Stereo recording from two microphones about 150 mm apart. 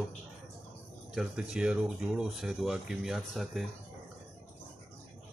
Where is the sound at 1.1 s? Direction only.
5° right (ahead or behind).